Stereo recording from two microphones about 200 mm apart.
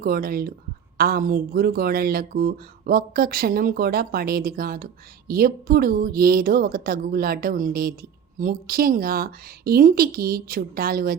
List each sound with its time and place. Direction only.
0.0 s speech: 50° right (ahead or behind)